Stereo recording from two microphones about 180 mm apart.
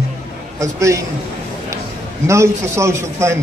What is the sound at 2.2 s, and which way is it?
A man's voice, 15° right (ahead or behind).